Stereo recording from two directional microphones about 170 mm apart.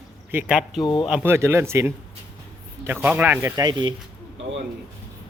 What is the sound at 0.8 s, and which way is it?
Speech, 30° left (ahead or behind).